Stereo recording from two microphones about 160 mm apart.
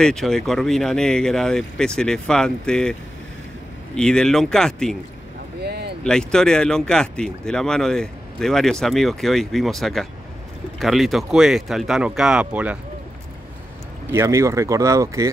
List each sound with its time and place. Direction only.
0.0 s speech: 5° left (ahead or behind)
5.6 s a sound: 90° right
6.0 s speech: 5° left (ahead or behind)
14.1 s speech: 20° right (ahead or behind)